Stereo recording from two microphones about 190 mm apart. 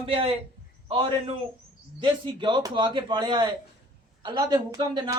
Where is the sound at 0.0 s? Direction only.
30° right (ahead or behind).